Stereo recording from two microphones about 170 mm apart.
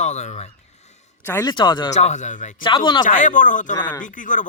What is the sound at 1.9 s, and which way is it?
Speech, 45° left (ahead or behind).